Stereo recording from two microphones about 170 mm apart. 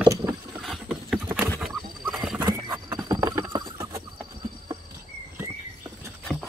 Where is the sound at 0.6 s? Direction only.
Centre (ahead or behind).